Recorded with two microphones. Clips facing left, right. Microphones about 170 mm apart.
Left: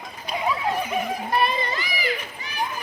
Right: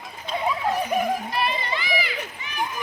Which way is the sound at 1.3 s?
40° left (ahead or behind).